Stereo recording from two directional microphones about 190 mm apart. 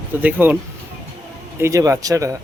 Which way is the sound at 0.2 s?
10° right (ahead or behind).